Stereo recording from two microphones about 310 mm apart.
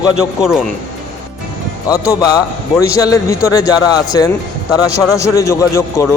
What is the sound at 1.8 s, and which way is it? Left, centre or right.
Speech, centre.